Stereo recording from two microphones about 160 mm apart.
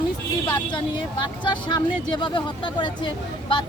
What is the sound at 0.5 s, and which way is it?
Speech, 30° left (ahead or behind).